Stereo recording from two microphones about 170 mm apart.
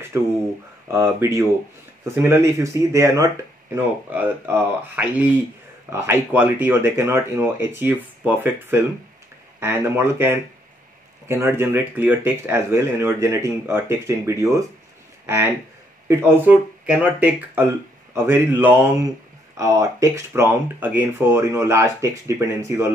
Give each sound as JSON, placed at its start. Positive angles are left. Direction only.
{"t": 0.1, "sound": "speech", "side_deg": -10}